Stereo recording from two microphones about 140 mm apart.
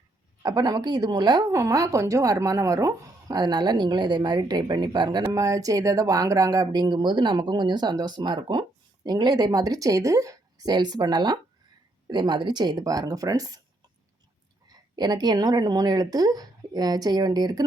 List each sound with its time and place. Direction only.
0.4 s a woman's voice: 30° right (ahead or behind)
14.7 s a woman's voice: 30° right (ahead or behind)